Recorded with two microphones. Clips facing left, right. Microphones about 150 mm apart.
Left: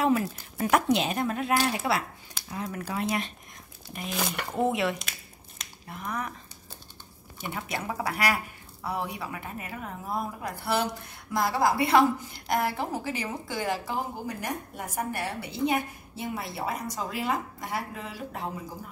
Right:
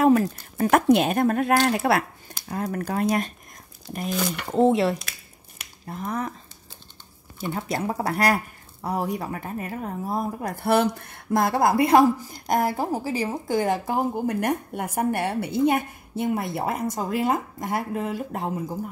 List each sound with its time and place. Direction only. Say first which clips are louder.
0.0 s a woman's voice: right 7 dB; 40° right (ahead or behind)
4.5 s a woman's voice: right 8 dB; 30° right (ahead or behind)
7.3 s a woman's voice: right 6 dB; 35° right (ahead or behind)
10.5 s a woman's voice: right 8 dB; 55° right (ahead or behind)